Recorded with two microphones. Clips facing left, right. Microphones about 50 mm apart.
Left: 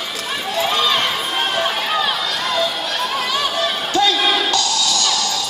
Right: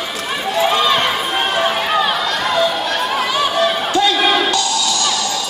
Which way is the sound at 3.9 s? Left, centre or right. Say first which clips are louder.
Left 3 dB; right.